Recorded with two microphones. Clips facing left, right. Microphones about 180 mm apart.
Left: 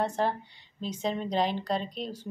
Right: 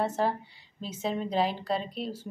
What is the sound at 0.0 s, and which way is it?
A woman's voice, 5° right (ahead or behind).